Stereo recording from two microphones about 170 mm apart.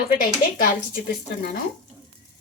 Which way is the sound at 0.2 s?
55° left (ahead or behind).